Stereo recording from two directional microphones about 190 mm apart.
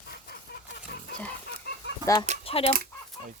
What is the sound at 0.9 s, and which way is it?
Pig, 55° left (ahead or behind).